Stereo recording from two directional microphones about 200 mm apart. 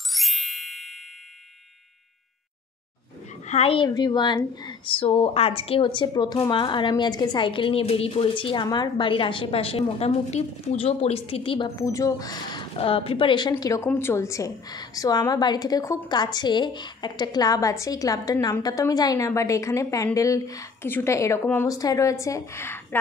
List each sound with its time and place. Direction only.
0.1 s music: centre (ahead or behind)
3.4 s a woman's voice: 30° left (ahead or behind); by 22.9 s 10° left (ahead or behind)